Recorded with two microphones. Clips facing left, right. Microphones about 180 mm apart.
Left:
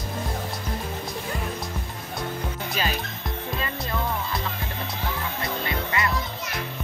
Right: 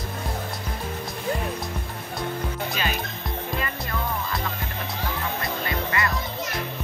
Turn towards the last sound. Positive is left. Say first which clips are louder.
# even
turn(degrees=20)  # may be behind; listen again after turning